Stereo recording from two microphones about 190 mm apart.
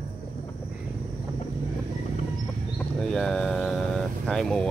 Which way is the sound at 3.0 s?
5° left (ahead or behind).